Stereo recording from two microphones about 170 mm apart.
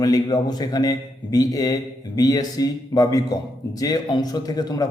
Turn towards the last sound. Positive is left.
turn(degrees=20)  # may be behind; listen again after turning